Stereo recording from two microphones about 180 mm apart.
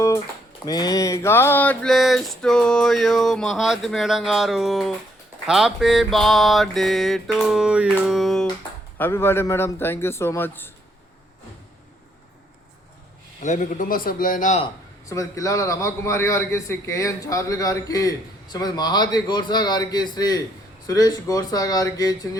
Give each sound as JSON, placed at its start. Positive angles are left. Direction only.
{"t": 0.6, "sound": "a sound", "side_deg": 20}
{"t": 9.0, "sound": "a man's voice", "side_deg": 10}
{"t": 13.4, "sound": "a man's voice", "side_deg": 45}
{"t": 15.1, "sound": "a man's voice", "side_deg": 20}